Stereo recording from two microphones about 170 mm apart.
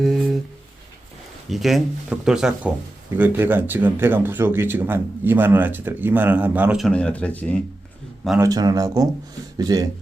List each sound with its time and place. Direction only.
0.0 s a sound: centre (ahead or behind)
1.5 s speech: centre (ahead or behind)
8.4 s speech: 20° right (ahead or behind)